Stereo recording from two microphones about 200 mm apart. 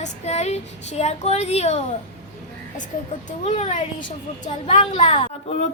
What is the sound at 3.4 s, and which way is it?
Speech, 35° left (ahead or behind).